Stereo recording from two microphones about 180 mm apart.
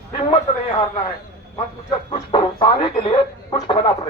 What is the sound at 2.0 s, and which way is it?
Speech, 30° left (ahead or behind).